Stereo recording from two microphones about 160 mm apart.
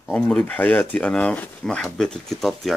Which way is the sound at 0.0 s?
5° left (ahead or behind).